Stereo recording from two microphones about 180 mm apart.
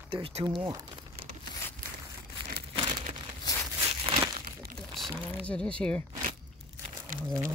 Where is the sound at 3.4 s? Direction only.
20° left (ahead or behind).